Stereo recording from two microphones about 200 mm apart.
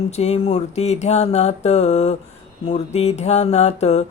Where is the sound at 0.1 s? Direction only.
30° left (ahead or behind).